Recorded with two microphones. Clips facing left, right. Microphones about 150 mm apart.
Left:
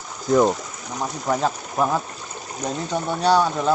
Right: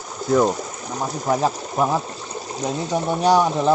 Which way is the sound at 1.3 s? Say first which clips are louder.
Right 2 dB; 10° right (ahead or behind).